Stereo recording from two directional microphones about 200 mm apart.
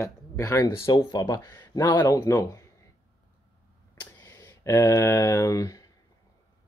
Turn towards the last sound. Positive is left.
turn(degrees=15)  # may be behind; listen again after turning